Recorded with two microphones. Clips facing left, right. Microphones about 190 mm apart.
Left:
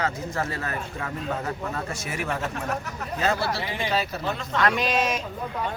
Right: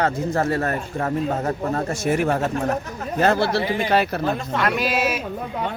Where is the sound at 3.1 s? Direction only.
60° right (ahead or behind).